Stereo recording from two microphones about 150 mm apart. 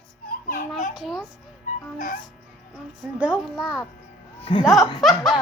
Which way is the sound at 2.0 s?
60° left (ahead or behind).